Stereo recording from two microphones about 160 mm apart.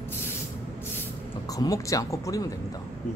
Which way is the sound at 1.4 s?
20° left (ahead or behind).